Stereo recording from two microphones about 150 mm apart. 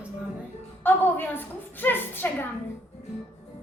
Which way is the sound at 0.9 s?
15° left (ahead or behind).